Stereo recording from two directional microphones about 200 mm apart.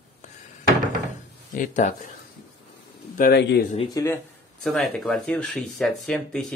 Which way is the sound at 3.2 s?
55° left (ahead or behind).